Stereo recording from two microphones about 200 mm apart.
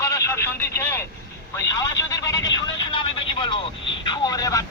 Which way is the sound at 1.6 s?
15° left (ahead or behind).